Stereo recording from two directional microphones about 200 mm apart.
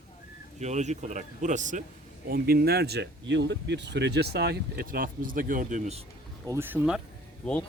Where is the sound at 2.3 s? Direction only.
50° right (ahead or behind).